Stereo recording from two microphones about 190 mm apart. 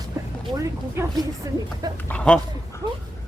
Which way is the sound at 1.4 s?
20° right (ahead or behind).